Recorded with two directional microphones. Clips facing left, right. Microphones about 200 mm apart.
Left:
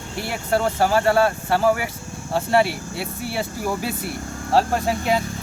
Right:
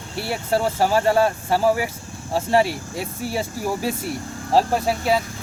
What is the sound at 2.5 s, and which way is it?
Speech, 40° right (ahead or behind).